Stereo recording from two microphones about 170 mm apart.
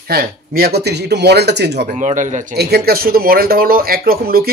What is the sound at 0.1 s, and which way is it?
Speech, 60° right (ahead or behind).